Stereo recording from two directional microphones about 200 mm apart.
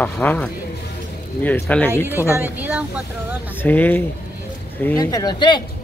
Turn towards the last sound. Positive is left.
turn(degrees=20)  # may be behind; listen again after turning